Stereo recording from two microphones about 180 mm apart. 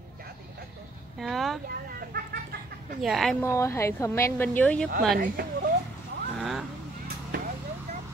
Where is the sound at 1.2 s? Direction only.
Centre (ahead or behind).